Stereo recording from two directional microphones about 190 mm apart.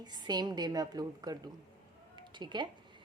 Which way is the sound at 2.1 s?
25° right (ahead or behind).